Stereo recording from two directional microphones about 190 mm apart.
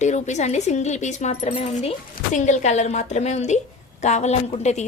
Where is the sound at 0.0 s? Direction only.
40° left (ahead or behind).